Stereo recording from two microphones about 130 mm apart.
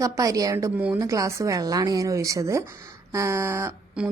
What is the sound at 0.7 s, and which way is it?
Speech, 10° right (ahead or behind).